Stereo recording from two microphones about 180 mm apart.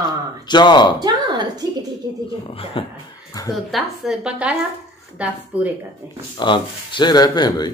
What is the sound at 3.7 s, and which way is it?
A woman's voice, centre (ahead or behind).